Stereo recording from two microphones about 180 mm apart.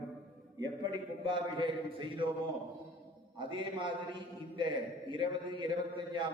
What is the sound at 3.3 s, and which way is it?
A man's voice, 25° right (ahead or behind).